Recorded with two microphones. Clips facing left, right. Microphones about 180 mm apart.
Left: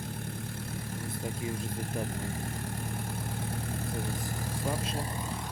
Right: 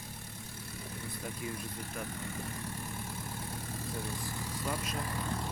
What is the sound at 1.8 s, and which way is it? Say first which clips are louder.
Speech: left 6 dB; 45° left (ahead or behind).